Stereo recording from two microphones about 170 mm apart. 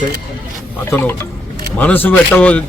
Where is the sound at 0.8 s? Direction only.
10° left (ahead or behind).